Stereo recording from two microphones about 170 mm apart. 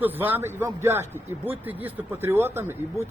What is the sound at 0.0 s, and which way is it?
A man's voice, 10° right (ahead or behind).